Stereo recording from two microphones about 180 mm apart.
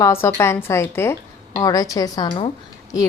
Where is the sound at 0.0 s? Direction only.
15° left (ahead or behind).